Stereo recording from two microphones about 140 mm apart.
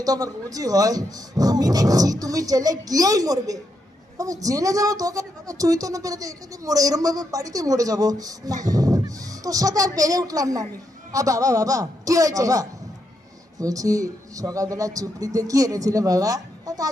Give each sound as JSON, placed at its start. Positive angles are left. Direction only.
{"t": 0.0, "sound": "speech", "side_deg": -25}